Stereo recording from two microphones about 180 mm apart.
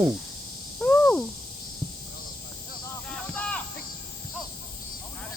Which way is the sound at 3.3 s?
10° left (ahead or behind).